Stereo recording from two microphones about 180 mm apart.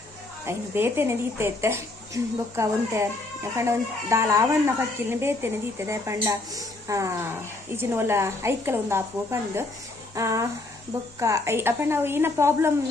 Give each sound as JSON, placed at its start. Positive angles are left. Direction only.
{"t": 0.4, "sound": "speech", "side_deg": -15}